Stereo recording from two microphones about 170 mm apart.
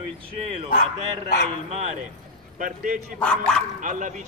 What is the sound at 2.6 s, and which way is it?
Speech, 55° right (ahead or behind).